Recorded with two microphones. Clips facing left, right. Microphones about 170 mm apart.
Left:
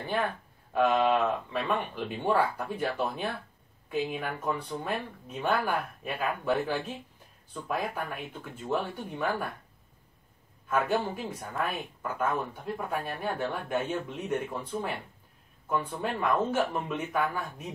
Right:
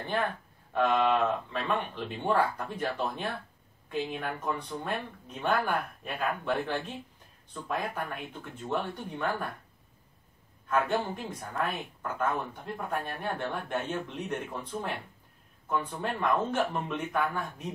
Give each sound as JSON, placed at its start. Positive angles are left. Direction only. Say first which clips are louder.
{"t": 0.0, "sound": "speech", "louder": "left 1 dB", "side_deg": 5}
{"t": 10.7, "sound": "speech", "louder": "left 1 dB", "side_deg": 5}